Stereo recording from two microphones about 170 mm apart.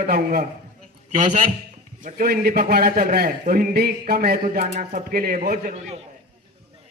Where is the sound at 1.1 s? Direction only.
45° right (ahead or behind); by 5.7 s 60° right (ahead or behind).